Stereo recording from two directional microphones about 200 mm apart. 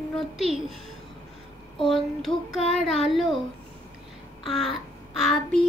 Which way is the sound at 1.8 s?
Centre (ahead or behind).